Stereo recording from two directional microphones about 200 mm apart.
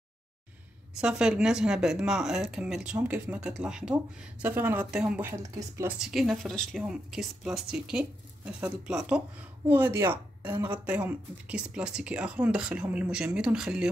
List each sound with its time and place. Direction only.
1.0 s a woman's voice: 5° right (ahead or behind)
5.9 s a woman's voice: centre (ahead or behind)